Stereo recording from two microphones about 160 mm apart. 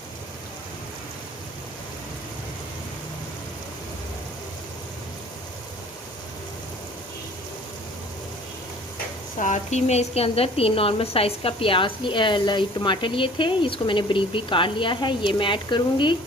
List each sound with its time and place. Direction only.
9.4 s a woman's voice: 45° left (ahead or behind); by 16.1 s 30° left (ahead or behind)